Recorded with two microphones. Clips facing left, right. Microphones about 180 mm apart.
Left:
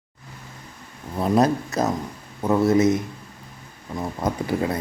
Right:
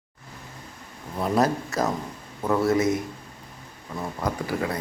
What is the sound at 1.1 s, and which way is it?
Speech, 20° left (ahead or behind).